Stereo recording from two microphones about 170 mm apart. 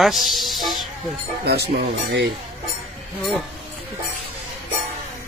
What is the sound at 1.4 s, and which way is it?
Speech, 70° right (ahead or behind).